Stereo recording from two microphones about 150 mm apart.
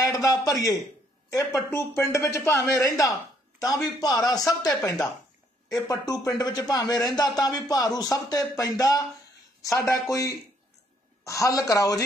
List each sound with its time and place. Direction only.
0.0 s a sound: 20° left (ahead or behind)
0.5 s speech: 25° left (ahead or behind)
5.9 s speech: 25° left (ahead or behind)